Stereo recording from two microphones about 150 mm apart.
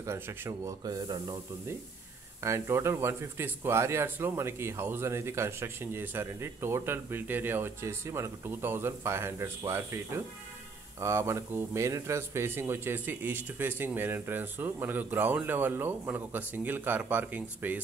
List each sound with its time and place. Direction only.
0.0 s speech: 15° right (ahead or behind)